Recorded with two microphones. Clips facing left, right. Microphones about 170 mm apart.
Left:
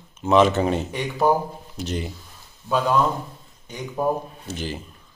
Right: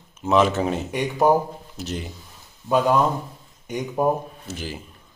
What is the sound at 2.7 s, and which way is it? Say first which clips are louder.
Speech: right 2 dB; 15° right (ahead or behind).